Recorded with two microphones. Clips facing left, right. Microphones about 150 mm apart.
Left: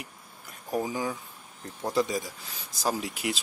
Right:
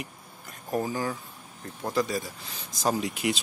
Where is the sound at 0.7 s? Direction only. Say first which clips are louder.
Right 1 dB; 10° left (ahead or behind).